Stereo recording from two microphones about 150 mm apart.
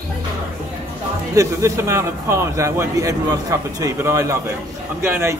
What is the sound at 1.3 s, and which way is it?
A man's voice, 20° right (ahead or behind).